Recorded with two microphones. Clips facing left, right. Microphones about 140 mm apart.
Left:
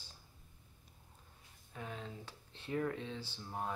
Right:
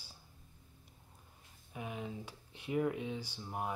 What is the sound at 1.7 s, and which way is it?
Speech, 15° right (ahead or behind).